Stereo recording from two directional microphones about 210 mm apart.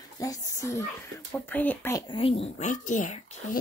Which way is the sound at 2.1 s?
25° left (ahead or behind).